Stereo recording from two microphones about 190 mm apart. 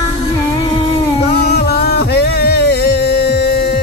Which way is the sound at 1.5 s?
55° left (ahead or behind).